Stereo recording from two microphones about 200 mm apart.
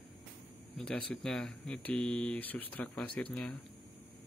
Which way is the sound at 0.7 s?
5° left (ahead or behind).